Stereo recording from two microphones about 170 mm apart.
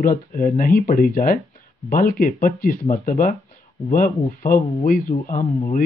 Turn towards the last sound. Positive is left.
turn(degrees=40)  # may be behind; listen again after turning